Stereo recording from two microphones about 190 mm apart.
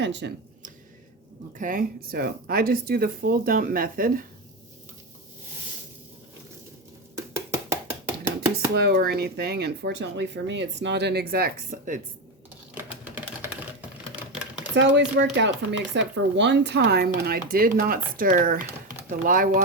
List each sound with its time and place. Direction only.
0.0 s speech: 65° right (ahead or behind)
1.5 s speech: 45° right (ahead or behind)
7.3 s chopping: 10° right (ahead or behind)
8.7 s speech: 60° right (ahead or behind)
14.8 s speech: 65° right (ahead or behind); by 19.6 s 45° right (ahead or behind)